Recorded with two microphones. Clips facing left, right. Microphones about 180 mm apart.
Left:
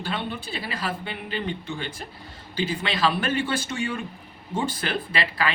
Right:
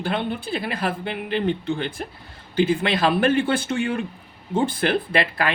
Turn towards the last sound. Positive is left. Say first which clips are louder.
# right 4 dB
turn(degrees=-55)  # may be behind; listen again after turning